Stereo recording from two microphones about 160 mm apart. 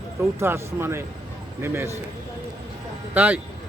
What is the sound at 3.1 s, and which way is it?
Speech, 10° right (ahead or behind).